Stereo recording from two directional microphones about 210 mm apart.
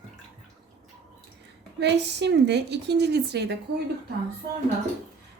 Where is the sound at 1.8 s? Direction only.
55° right (ahead or behind).